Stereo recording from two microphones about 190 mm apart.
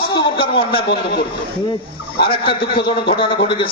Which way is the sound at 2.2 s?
25° left (ahead or behind).